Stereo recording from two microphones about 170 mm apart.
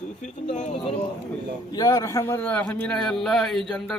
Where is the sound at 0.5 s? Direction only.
45° left (ahead or behind).